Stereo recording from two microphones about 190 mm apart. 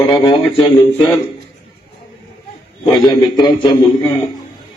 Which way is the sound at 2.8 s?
25° left (ahead or behind).